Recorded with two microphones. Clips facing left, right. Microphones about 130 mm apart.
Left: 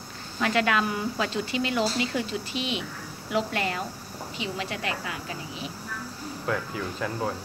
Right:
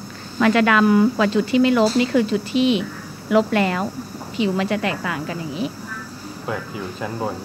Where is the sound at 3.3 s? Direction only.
70° right (ahead or behind).